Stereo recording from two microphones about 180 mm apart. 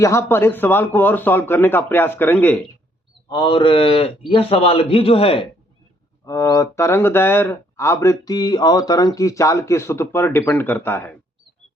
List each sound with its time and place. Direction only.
0.0 s speech: 15° left (ahead or behind)
3.2 s a man's voice: 25° left (ahead or behind)
6.2 s speech: 20° left (ahead or behind)